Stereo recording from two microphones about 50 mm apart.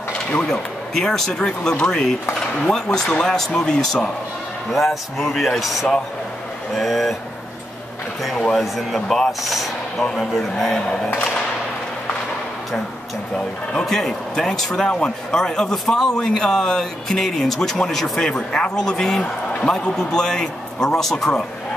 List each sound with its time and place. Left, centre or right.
0.5 s speech: centre
8.5 s speech: centre
13.7 s speech: centre
14.9 s speech: left